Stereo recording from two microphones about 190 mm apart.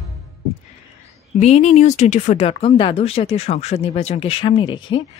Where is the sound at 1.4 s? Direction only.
35° left (ahead or behind).